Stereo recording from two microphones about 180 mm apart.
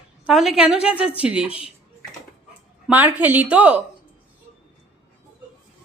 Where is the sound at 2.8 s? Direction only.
10° right (ahead or behind).